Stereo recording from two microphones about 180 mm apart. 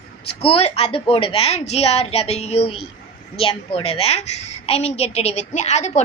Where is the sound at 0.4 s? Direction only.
35° left (ahead or behind).